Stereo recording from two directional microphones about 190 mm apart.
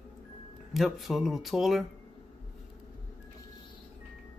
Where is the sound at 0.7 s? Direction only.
Centre (ahead or behind).